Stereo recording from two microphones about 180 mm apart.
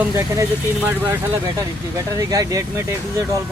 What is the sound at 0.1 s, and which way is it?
Speech, 15° right (ahead or behind).